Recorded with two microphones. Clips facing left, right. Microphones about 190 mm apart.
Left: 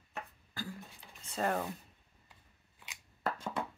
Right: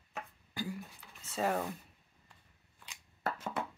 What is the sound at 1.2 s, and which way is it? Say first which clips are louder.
Speech: right 1 dB; 5° right (ahead or behind).